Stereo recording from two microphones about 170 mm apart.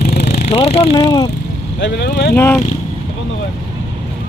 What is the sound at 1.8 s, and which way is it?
Speech, 90° left.